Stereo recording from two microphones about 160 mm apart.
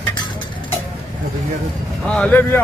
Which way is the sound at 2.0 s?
10° left (ahead or behind).